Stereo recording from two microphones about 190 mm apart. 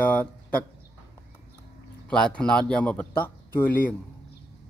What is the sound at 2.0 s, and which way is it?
Speech, 5° left (ahead or behind).